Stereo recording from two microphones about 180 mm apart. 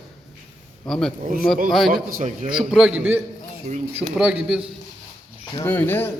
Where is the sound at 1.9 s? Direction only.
45° right (ahead or behind).